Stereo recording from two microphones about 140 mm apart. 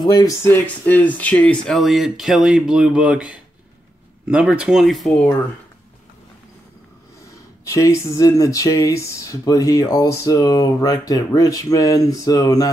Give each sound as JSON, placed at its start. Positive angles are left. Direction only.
{"t": 0.0, "sound": "speech", "side_deg": 25}
{"t": 7.7, "sound": "speech", "side_deg": 20}